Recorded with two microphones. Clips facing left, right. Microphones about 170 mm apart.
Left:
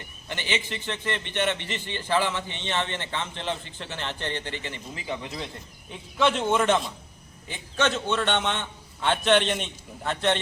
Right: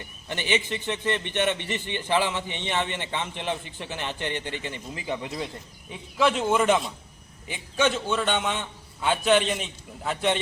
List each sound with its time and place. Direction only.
0.3 s a man's voice: 15° right (ahead or behind)
5.9 s a man's voice: 5° right (ahead or behind)